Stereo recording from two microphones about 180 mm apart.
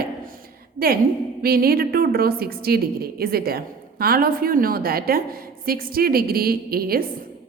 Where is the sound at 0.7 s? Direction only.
55° right (ahead or behind).